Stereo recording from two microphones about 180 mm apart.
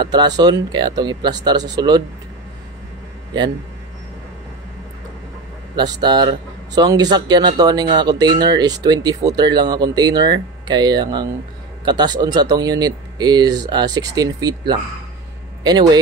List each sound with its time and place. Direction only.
0.0 s speech: 25° right (ahead or behind)
5.8 s speech: 25° right (ahead or behind)
15.6 s speech: 25° right (ahead or behind)